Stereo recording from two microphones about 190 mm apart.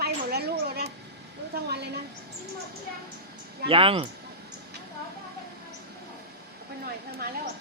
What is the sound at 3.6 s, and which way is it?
Speech, 30° right (ahead or behind).